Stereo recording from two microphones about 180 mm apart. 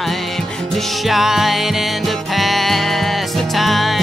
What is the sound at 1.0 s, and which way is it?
Music, centre (ahead or behind).